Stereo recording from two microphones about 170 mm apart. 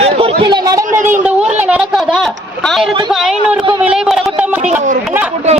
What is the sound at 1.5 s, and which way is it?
Speech, 5° right (ahead or behind).